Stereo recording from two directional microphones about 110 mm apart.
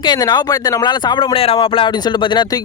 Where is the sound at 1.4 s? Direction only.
55° left (ahead or behind).